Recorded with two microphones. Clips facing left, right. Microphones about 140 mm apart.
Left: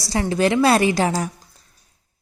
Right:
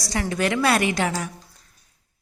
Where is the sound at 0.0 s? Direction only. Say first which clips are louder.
Left 5 dB; 30° left (ahead or behind).